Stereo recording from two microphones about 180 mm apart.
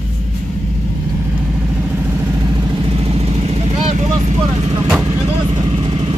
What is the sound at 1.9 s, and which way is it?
Vehicle, 10° right (ahead or behind).